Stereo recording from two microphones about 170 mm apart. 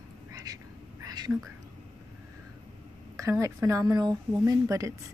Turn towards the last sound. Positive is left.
turn(degrees=-20)  # may be behind; listen again after turning